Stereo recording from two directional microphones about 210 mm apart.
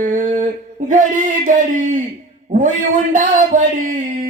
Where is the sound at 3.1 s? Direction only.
35° right (ahead or behind).